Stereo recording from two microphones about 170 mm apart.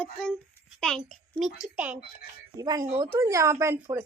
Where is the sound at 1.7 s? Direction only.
10° right (ahead or behind).